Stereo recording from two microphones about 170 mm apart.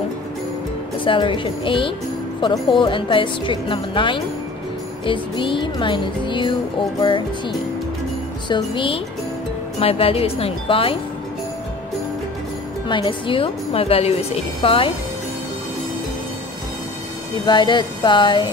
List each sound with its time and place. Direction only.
1.0 s a woman's voice: 30° left (ahead or behind)
12.8 s a woman's voice: 30° left (ahead or behind)
17.5 s speech: 25° left (ahead or behind)